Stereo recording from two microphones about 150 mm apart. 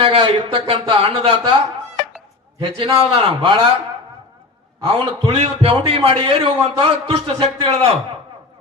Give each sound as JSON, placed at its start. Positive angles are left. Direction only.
{"t": 0.0, "sound": "a man's voice", "side_deg": -35}
{"t": 2.6, "sound": "a man's voice", "side_deg": -35}
{"t": 4.9, "sound": "a man's voice", "side_deg": -40}